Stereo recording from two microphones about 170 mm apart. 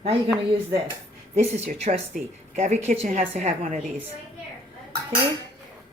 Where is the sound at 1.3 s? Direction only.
40° right (ahead or behind).